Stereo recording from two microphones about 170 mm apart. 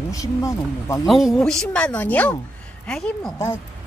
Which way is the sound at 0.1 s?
20° left (ahead or behind).